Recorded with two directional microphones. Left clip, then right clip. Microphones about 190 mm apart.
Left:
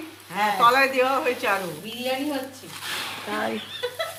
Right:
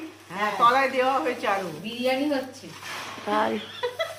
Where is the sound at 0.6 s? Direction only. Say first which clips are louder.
Left 1 dB; 5° left (ahead or behind).